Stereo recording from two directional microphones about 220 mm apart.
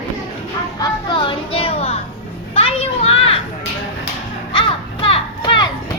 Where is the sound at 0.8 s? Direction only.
20° left (ahead or behind).